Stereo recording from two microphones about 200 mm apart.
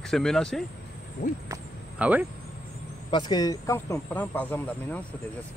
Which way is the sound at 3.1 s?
20° left (ahead or behind).